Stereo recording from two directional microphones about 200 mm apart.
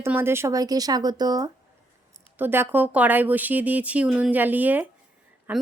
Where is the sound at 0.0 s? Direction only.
10° right (ahead or behind).